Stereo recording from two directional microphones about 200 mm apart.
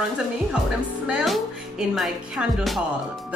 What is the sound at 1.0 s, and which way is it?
A woman's voice, 5° right (ahead or behind).